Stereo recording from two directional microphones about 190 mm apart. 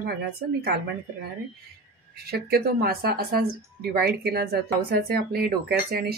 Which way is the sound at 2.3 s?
55° right (ahead or behind).